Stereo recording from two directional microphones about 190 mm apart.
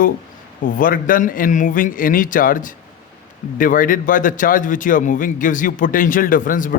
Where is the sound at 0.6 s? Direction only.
45° left (ahead or behind).